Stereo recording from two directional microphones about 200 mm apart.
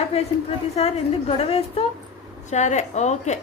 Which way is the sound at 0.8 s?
30° left (ahead or behind).